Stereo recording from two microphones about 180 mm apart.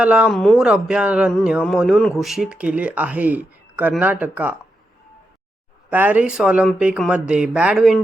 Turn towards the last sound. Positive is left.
turn(degrees=-5)  # may be behind; listen again after turning